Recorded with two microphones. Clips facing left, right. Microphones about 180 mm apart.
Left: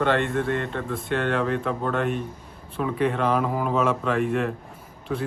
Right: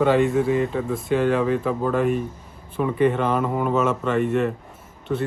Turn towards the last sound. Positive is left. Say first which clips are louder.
# right 3 dB
turn(degrees=0)  # may be behind; listen again after turning